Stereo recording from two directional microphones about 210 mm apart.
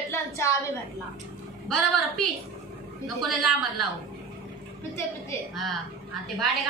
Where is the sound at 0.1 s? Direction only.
15° left (ahead or behind).